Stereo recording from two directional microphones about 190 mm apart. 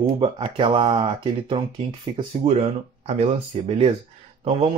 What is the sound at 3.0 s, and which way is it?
Speech, 35° right (ahead or behind).